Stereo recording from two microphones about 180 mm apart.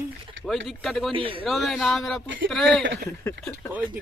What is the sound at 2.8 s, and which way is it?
Speech, 65° right (ahead or behind).